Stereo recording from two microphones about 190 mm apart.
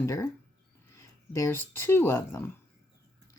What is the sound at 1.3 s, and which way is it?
A woman's voice, 15° left (ahead or behind).